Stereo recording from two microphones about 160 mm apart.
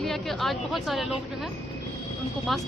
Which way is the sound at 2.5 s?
Centre (ahead or behind).